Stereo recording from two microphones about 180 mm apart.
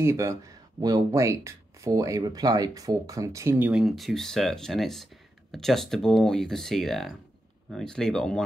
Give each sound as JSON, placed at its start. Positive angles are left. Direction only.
{"t": 0.0, "sound": "speech", "side_deg": -15}